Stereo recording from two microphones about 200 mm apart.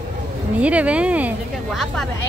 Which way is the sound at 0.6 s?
5° right (ahead or behind).